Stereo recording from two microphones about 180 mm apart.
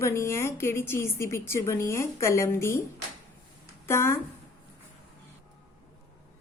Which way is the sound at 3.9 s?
15° left (ahead or behind).